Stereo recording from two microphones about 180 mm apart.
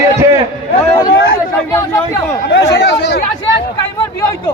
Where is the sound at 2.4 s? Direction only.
70° left (ahead or behind).